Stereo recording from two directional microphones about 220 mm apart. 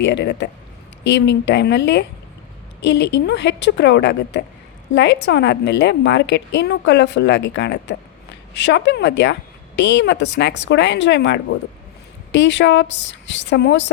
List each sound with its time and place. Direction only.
0.0 s a woman's voice: 55° left (ahead or behind)